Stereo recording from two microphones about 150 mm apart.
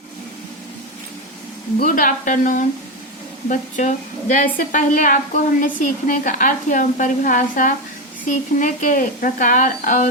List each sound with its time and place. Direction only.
1.8 s a woman's voice: 60° left (ahead or behind)